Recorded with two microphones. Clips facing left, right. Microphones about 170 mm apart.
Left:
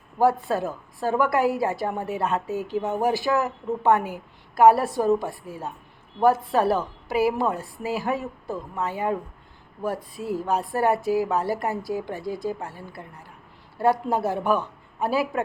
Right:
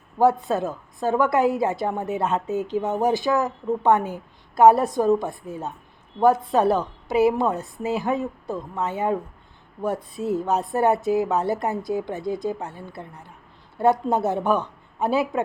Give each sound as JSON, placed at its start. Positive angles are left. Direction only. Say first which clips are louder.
{"t": 0.2, "sound": "a woman's voice", "louder": "right 2 dB", "side_deg": -20}